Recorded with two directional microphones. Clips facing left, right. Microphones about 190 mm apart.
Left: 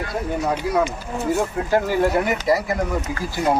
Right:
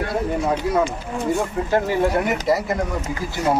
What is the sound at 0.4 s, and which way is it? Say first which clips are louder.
Speech: left 1 dB; centre (ahead or behind).